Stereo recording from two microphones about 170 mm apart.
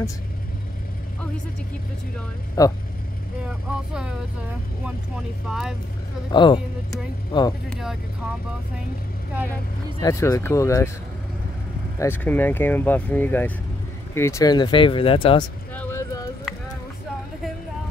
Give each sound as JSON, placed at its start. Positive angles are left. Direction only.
{"t": 2.6, "sound": "speech", "side_deg": 20}
{"t": 3.4, "sound": "speech", "side_deg": -5}
{"t": 5.5, "sound": "speech", "side_deg": -5}
{"t": 6.3, "sound": "speech", "side_deg": 25}
{"t": 7.7, "sound": "speech", "side_deg": 0}
{"t": 9.9, "sound": "speech", "side_deg": 20}
{"t": 12.0, "sound": "speech", "side_deg": 10}
{"t": 15.7, "sound": "a sound", "side_deg": 15}